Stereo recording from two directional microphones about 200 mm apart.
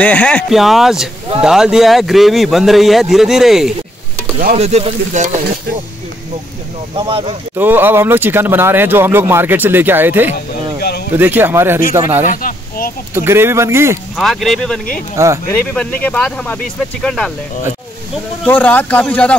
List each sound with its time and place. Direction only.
0.0 s speech: 5° left (ahead or behind)
4.6 s speech: 30° right (ahead or behind)
7.0 s speech: 25° right (ahead or behind)
7.5 s speech: 10° right (ahead or behind)
12.3 s a sound: 45° left (ahead or behind)
13.1 s speech: 10° right (ahead or behind)
14.1 s speech: centre (ahead or behind)
15.2 s speech: 15° right (ahead or behind)
15.5 s speech: 5° left (ahead or behind)
18.4 s speech: 10° left (ahead or behind)